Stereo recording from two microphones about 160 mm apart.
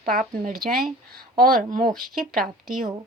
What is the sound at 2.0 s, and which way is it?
Speech, 65° right (ahead or behind).